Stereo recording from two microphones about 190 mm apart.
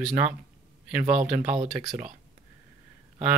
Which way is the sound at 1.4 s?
35° right (ahead or behind).